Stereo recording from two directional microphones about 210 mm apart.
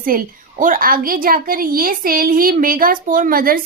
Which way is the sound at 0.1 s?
40° right (ahead or behind).